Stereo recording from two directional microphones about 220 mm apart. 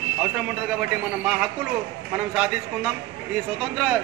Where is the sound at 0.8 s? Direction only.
5° right (ahead or behind).